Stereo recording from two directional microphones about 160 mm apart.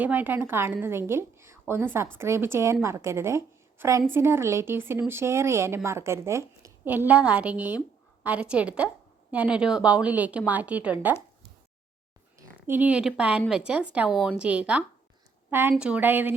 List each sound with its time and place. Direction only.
0.0 s a woman's voice: 10° right (ahead or behind)
12.4 s a woman's voice: 15° right (ahead or behind)